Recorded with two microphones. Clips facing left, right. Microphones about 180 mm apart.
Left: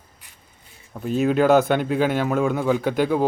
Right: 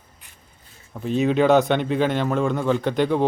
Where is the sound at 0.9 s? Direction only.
Centre (ahead or behind).